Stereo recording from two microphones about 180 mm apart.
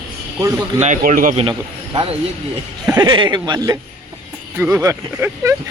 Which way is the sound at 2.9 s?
25° right (ahead or behind).